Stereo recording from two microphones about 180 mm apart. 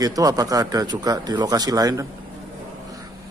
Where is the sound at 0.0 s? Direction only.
20° right (ahead or behind).